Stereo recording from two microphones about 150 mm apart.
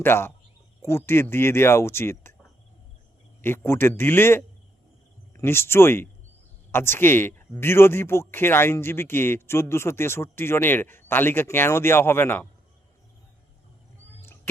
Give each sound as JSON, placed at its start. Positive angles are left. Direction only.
{"t": 0.0, "sound": "speech", "side_deg": 15}
{"t": 3.4, "sound": "speech", "side_deg": 15}